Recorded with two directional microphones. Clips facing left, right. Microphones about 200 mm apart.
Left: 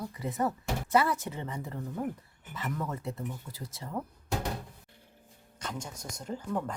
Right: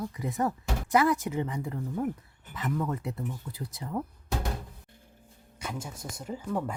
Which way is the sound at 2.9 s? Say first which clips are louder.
Right 3 dB; 15° right (ahead or behind).